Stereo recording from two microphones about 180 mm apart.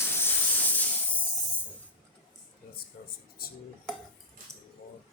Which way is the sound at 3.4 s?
55° left (ahead or behind).